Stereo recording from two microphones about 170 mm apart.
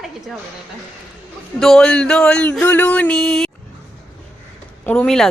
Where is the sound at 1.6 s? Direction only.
5° left (ahead or behind).